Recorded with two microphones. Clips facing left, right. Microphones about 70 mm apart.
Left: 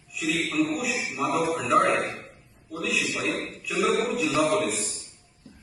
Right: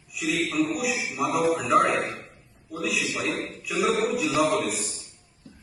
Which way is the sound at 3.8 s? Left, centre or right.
Centre.